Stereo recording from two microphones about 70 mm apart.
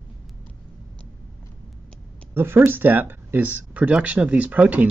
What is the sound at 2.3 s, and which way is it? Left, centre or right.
Speech, right.